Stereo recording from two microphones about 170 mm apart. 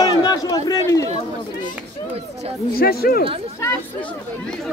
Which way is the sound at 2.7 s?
65° left (ahead or behind).